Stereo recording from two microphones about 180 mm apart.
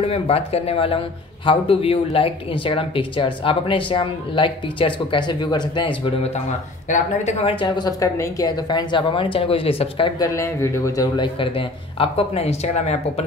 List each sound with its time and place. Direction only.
0.0 s a man's voice: 35° left (ahead or behind)